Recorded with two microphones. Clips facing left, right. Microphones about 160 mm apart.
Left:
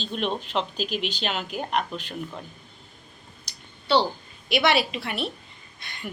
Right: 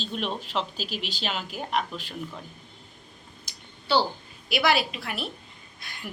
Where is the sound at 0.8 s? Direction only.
40° right (ahead or behind).